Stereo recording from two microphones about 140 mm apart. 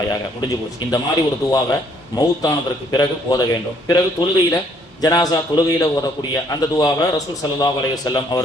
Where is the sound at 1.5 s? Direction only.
25° left (ahead or behind).